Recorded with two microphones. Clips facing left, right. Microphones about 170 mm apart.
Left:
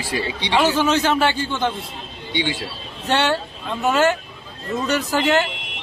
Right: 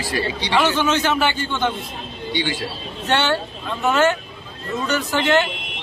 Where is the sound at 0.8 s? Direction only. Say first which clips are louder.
Left 1 dB; 35° left (ahead or behind).